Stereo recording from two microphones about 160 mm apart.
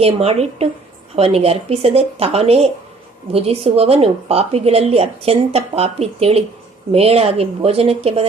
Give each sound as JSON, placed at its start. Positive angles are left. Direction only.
{"t": 0.0, "sound": "a woman's voice", "side_deg": -40}